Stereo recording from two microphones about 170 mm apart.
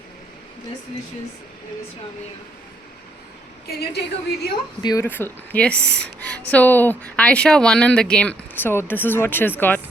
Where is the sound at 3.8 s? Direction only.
70° left (ahead or behind).